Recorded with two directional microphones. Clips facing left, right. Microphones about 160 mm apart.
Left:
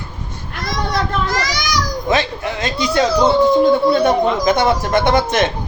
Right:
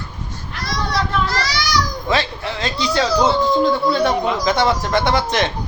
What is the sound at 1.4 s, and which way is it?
Children playing, 45° left (ahead or behind).